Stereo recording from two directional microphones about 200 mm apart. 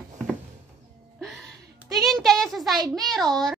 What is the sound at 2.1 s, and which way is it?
Speech, centre (ahead or behind).